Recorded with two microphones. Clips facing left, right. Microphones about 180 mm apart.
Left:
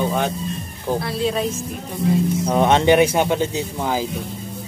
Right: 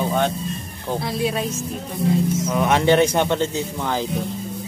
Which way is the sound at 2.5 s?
30° left (ahead or behind).